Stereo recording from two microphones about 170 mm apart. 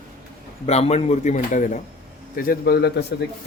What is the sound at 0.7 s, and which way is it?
A man's voice, 40° left (ahead or behind).